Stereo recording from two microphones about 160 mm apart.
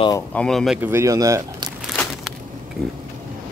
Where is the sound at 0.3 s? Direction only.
5° left (ahead or behind).